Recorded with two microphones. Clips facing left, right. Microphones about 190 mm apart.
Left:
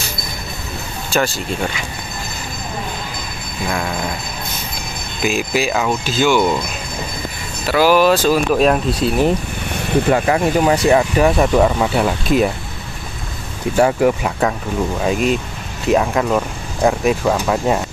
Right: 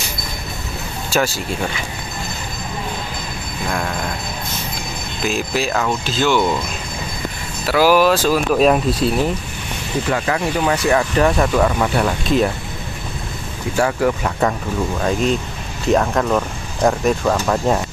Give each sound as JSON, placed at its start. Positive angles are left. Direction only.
{"t": 1.1, "sound": "speech", "side_deg": -5}
{"t": 3.6, "sound": "speech", "side_deg": 0}
{"t": 5.2, "sound": "speech", "side_deg": 5}
{"t": 7.6, "sound": "speech", "side_deg": -5}
{"t": 10.1, "sound": "speech", "side_deg": 25}
{"t": 13.7, "sound": "speech", "side_deg": 20}
{"t": 15.0, "sound": "speech", "side_deg": 5}